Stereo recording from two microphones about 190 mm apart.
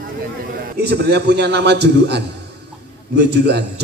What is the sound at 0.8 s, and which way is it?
A man's voice, 60° right (ahead or behind).